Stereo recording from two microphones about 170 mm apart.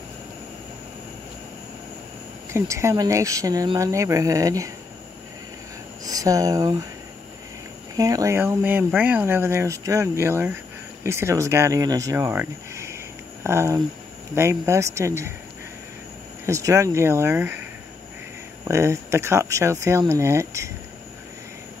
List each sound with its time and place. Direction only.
2.5 s speech: 15° right (ahead or behind)
6.0 s speech: 20° right (ahead or behind)
7.9 s speech: 20° right (ahead or behind)
16.4 s speech: 20° right (ahead or behind)
18.6 s speech: 15° right (ahead or behind)